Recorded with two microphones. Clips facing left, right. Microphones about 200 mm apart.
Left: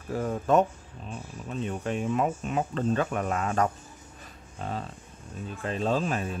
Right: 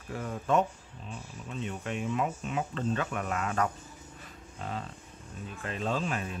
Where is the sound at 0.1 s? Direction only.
40° left (ahead or behind).